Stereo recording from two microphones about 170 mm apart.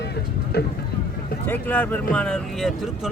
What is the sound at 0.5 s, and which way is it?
Speech, 70° left (ahead or behind).